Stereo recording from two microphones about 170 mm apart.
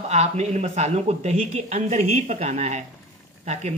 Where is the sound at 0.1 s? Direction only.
40° right (ahead or behind).